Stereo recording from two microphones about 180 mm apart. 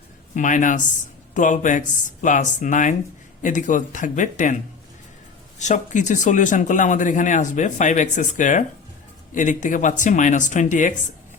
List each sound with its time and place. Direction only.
0.3 s speech: 45° left (ahead or behind)
5.5 s speech: 40° left (ahead or behind)